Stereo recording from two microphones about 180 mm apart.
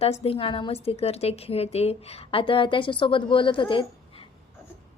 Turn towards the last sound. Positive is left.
turn(degrees=30)  # may be behind; listen again after turning